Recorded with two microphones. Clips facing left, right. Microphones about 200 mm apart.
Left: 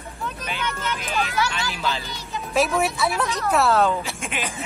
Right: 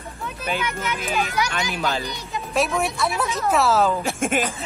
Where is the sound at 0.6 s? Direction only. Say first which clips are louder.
Right 1 dB; 10° right (ahead or behind).